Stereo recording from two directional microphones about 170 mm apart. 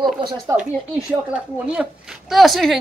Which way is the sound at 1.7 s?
5° right (ahead or behind).